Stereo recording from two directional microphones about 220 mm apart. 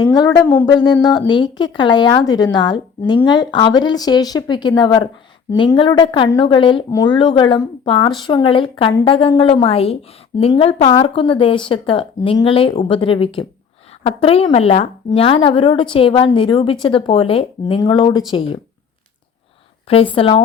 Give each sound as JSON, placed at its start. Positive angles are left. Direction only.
{"t": 0.0, "sound": "a woman's voice", "side_deg": 20}
{"t": 19.9, "sound": "a woman's voice", "side_deg": 25}